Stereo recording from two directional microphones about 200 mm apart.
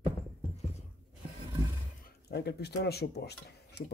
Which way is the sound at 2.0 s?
55° left (ahead or behind).